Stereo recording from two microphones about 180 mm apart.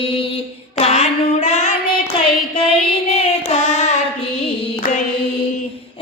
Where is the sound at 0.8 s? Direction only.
35° left (ahead or behind).